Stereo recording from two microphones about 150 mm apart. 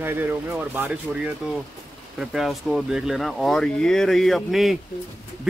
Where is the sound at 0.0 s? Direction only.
15° right (ahead or behind).